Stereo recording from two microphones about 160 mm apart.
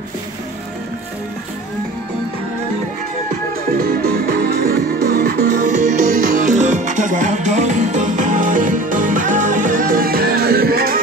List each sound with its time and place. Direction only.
3.8 s music: 70° right (ahead or behind)